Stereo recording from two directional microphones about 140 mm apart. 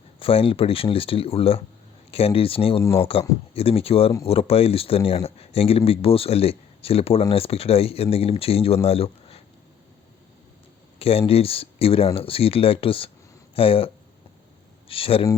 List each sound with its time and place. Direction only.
0.2 s speech: 40° left (ahead or behind)
11.0 s speech: 45° left (ahead or behind)